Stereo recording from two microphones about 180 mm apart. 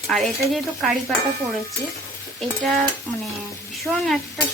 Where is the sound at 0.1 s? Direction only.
Centre (ahead or behind).